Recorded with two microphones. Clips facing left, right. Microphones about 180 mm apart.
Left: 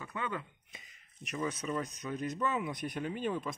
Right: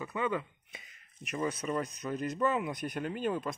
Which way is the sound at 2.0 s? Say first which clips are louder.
Right 3 dB; 35° right (ahead or behind).